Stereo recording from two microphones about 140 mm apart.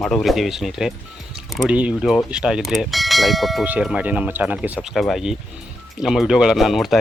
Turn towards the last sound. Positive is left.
turn(degrees=0)  # may be behind; listen again after turning